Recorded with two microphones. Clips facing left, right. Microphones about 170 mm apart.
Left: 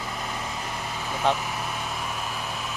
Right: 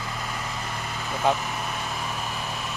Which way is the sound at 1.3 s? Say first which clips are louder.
Right 1 dB; 5° right (ahead or behind).